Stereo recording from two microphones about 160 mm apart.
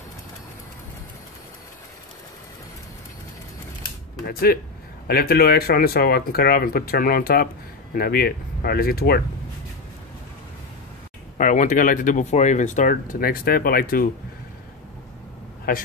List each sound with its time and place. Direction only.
4.3 s speech: 70° left (ahead or behind)
11.3 s speech: 55° left (ahead or behind)
15.7 s speech: 65° left (ahead or behind)